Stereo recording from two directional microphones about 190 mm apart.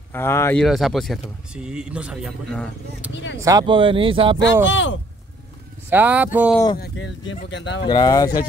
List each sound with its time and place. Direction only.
0.1 s speech: 15° left (ahead or behind)
0.7 s speech: centre (ahead or behind)
3.3 s speech: 20° right (ahead or behind)
4.6 s speech: 80° left
5.9 s speech: 10° right (ahead or behind)
6.5 s speech: 20° left (ahead or behind)
6.8 s speech: 70° left (ahead or behind)
7.8 s speech: 20° left (ahead or behind)